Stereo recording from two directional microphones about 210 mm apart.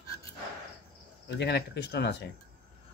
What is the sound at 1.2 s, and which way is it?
Speech, 55° left (ahead or behind).